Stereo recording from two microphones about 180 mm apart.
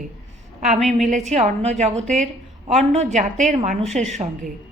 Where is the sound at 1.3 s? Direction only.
40° right (ahead or behind).